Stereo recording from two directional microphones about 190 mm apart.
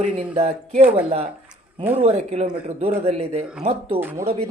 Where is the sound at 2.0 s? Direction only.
35° right (ahead or behind).